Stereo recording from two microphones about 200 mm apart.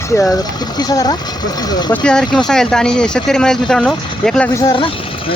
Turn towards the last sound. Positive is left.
turn(degrees=20)  # may be behind; listen again after turning